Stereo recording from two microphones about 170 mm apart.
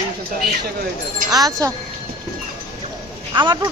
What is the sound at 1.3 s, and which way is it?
Speech, 20° right (ahead or behind).